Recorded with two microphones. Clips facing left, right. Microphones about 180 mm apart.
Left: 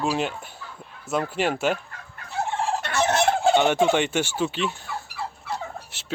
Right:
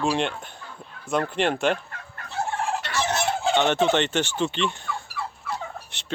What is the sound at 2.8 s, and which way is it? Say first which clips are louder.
Fowl: left 4 dB; 55° left (ahead or behind).